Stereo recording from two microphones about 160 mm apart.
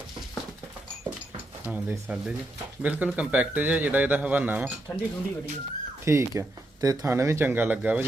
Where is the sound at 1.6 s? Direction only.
10° right (ahead or behind).